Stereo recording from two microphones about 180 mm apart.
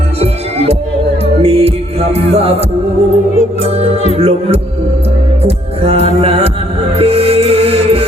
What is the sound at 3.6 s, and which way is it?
Music, 35° right (ahead or behind).